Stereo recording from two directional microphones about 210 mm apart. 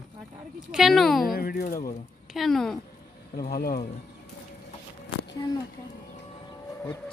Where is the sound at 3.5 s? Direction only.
45° left (ahead or behind).